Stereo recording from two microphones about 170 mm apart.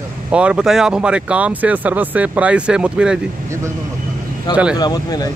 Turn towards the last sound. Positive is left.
turn(degrees=20)  # may be behind; listen again after turning